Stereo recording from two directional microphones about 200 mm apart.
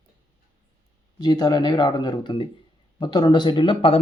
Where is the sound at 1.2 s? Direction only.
20° left (ahead or behind).